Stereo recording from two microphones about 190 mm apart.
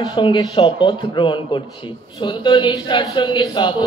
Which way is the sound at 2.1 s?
25° left (ahead or behind).